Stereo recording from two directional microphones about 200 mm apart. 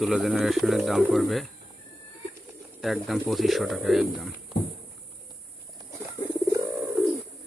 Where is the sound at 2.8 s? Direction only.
Centre (ahead or behind).